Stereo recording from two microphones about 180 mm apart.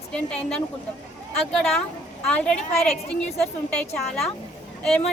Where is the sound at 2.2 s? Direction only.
5° left (ahead or behind).